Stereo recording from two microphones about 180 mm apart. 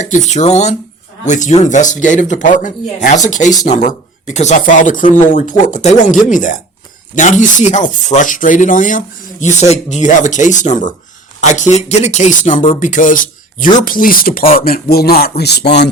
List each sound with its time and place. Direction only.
0.0 s speech: 40° left (ahead or behind); by 15.7 s 65° left (ahead or behind)